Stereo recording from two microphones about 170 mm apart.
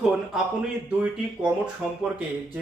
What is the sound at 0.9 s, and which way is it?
Speech, 10° right (ahead or behind).